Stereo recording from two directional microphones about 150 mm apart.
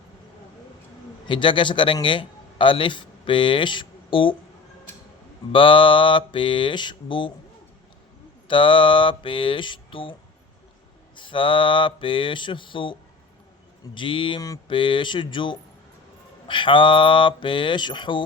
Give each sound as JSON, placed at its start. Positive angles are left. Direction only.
{"t": 1.3, "sound": "a man's voice", "side_deg": 35}
{"t": 5.5, "sound": "mantra", "side_deg": 35}
{"t": 8.4, "sound": "mantra", "side_deg": 35}
{"t": 11.2, "sound": "mantra", "side_deg": 35}